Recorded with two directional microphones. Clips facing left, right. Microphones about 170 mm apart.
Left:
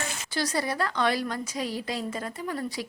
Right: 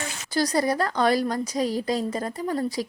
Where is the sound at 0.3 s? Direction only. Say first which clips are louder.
Right 6 dB; 40° right (ahead or behind).